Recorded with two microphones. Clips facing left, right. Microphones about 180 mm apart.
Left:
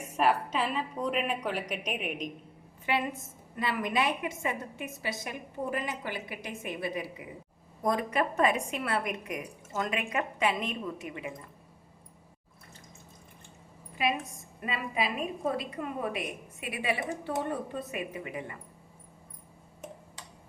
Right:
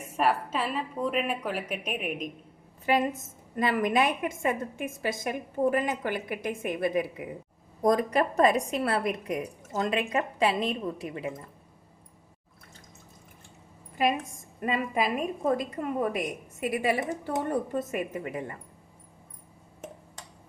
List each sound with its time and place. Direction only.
0.0 s a woman's voice: 5° right (ahead or behind)
2.8 s a woman's voice: 40° right (ahead or behind)
7.8 s a woman's voice: 40° right (ahead or behind)
14.6 s a woman's voice: 45° right (ahead or behind)